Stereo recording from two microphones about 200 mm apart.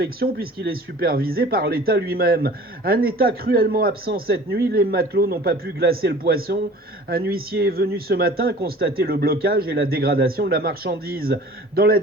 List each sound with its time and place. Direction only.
0.0 s speech: 50° right (ahead or behind)